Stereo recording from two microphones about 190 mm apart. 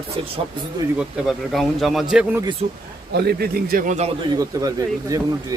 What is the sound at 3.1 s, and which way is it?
Speech, 55° right (ahead or behind).